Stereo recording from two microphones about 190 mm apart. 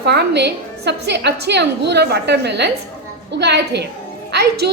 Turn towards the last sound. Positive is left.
turn(degrees=-60)  # may be behind; listen again after turning